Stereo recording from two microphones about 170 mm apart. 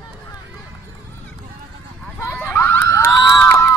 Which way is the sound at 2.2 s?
15° left (ahead or behind).